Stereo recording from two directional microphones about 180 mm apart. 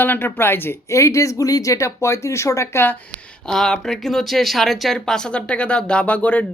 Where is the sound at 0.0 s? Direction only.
10° left (ahead or behind).